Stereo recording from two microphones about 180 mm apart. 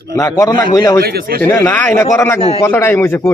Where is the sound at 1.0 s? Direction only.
60° right (ahead or behind).